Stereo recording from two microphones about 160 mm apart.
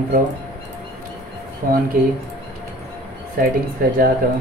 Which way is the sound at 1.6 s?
65° right (ahead or behind).